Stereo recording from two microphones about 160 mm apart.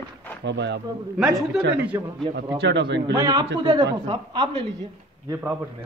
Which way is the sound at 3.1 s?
20° right (ahead or behind).